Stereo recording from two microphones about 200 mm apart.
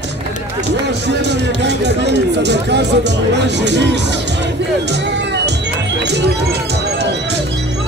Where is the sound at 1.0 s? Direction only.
60° right (ahead or behind).